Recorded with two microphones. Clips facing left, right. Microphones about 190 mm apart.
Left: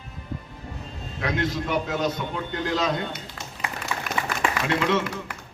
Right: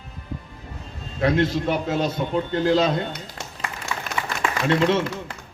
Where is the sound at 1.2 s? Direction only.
30° right (ahead or behind).